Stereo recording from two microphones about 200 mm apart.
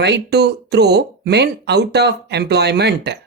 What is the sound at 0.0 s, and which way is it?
Speech, 55° right (ahead or behind).